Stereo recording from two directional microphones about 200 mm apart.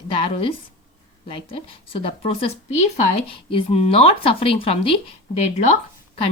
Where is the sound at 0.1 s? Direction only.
25° left (ahead or behind).